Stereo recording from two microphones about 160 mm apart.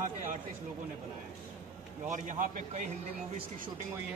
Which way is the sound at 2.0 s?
50° right (ahead or behind).